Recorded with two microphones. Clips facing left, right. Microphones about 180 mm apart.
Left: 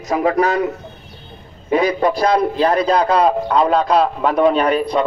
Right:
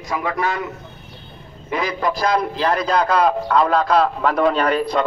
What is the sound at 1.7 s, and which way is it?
A man's voice, 30° left (ahead or behind).